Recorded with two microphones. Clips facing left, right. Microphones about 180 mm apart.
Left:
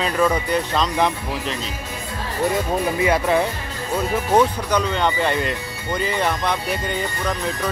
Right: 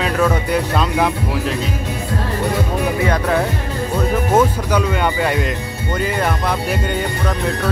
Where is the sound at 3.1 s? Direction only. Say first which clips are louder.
Right 1 dB; 5° left (ahead or behind).